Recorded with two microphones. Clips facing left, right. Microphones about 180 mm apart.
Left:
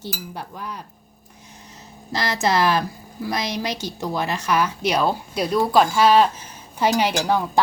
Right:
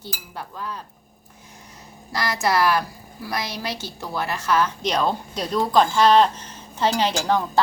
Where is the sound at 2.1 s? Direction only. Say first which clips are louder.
Left 1 dB; 25° left (ahead or behind).